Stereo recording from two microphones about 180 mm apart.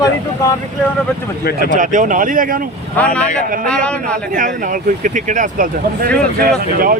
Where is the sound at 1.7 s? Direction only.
45° right (ahead or behind).